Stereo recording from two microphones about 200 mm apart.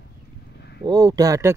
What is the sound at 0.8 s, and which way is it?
Speech, 20° right (ahead or behind).